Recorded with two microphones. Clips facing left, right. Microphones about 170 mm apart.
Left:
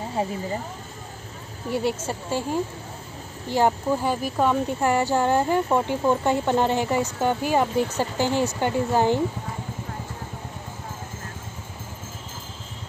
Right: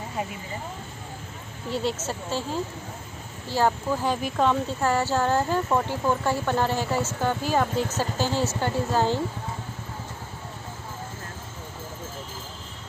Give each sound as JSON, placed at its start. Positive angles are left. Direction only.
{"t": 0.1, "sound": "speech", "side_deg": 30}
{"t": 1.7, "sound": "speech", "side_deg": 10}